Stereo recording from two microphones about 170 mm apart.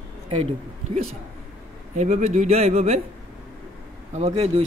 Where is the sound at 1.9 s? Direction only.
45° right (ahead or behind).